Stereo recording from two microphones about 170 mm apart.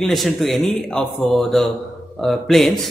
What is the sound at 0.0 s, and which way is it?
A man's voice, centre (ahead or behind).